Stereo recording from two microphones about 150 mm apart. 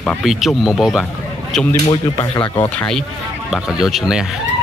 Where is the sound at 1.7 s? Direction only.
20° left (ahead or behind).